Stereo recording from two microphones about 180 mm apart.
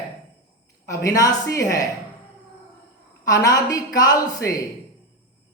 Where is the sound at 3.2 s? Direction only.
20° left (ahead or behind).